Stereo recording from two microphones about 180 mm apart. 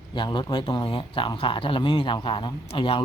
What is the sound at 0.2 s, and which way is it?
Speech, 25° left (ahead or behind).